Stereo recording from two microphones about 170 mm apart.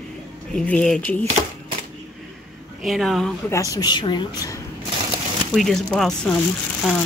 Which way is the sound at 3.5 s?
20° left (ahead or behind).